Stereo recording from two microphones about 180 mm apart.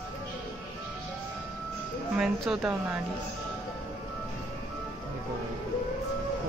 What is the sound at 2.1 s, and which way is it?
Speech, centre (ahead or behind).